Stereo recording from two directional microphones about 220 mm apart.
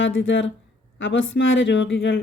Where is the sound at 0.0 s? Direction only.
60° left (ahead or behind).